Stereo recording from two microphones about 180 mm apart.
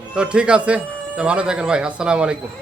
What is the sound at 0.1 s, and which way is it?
Speech, 5° right (ahead or behind).